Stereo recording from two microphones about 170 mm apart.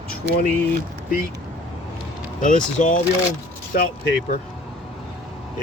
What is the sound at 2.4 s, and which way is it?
Speech, 50° left (ahead or behind).